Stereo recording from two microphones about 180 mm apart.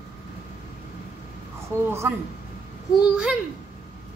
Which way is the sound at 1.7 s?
15° right (ahead or behind).